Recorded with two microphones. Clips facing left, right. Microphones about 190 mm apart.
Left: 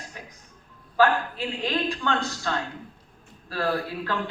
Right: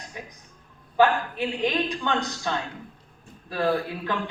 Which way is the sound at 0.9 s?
20° right (ahead or behind).